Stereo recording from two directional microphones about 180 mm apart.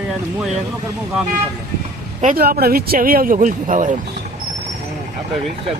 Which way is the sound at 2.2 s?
50° right (ahead or behind).